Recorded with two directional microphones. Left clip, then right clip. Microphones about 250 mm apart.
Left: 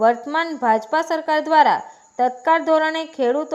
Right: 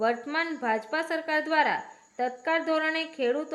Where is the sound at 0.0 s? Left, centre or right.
Centre.